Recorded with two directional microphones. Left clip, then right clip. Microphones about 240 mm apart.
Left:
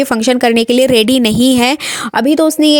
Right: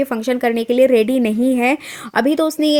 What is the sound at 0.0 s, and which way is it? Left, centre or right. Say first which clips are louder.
A woman's voice: left 6 dB; left.